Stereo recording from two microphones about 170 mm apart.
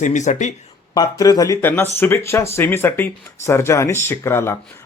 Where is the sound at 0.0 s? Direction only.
45° left (ahead or behind).